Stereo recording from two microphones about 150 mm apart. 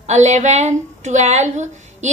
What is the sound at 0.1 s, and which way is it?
A woman's voice, 50° right (ahead or behind).